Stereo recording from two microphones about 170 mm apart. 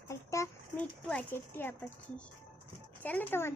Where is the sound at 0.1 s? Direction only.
15° left (ahead or behind).